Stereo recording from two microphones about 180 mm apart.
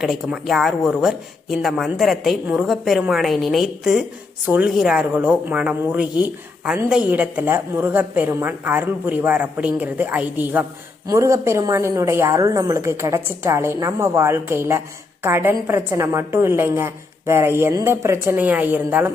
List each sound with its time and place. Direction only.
0.0 s a woman's voice: centre (ahead or behind)